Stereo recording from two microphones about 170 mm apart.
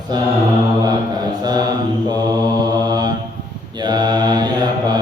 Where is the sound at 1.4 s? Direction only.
25° right (ahead or behind).